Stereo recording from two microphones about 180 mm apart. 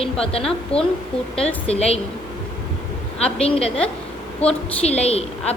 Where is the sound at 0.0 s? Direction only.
30° left (ahead or behind).